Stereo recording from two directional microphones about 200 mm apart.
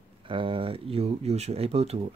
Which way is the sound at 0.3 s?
25° right (ahead or behind).